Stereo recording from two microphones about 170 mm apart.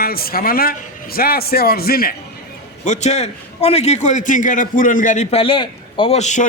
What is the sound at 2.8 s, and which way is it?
A man's voice, 45° left (ahead or behind).